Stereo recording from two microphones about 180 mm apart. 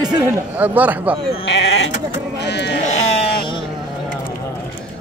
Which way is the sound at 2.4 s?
70° left (ahead or behind).